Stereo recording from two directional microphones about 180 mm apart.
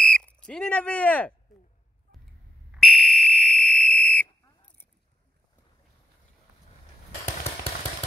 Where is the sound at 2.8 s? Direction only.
Centre (ahead or behind).